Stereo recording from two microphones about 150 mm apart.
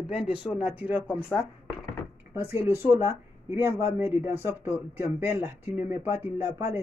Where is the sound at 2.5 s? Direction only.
15° right (ahead or behind).